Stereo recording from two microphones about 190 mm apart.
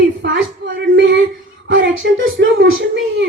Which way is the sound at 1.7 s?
90° right.